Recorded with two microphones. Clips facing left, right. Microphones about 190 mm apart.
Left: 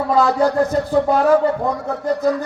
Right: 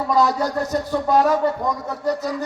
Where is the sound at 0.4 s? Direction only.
30° left (ahead or behind).